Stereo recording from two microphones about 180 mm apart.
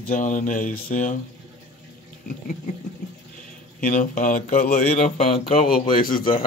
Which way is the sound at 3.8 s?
50° left (ahead or behind).